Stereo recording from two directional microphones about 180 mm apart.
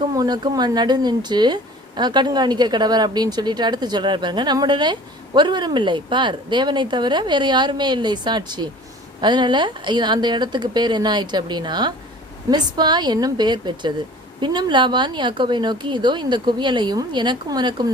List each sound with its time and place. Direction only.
0.2 s a woman's voice: 20° right (ahead or behind)